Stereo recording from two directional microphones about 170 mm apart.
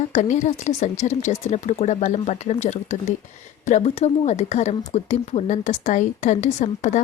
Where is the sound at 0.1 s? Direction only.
45° left (ahead or behind).